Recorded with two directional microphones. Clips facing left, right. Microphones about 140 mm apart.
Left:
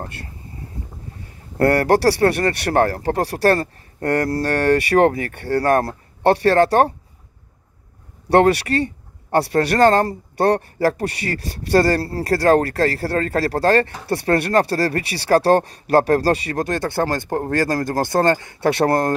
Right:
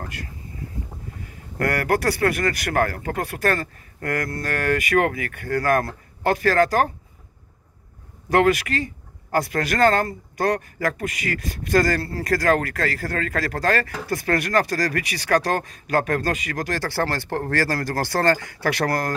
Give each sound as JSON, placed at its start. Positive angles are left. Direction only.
{"t": 0.0, "sound": "speech", "side_deg": 30}
{"t": 8.3, "sound": "speech", "side_deg": 30}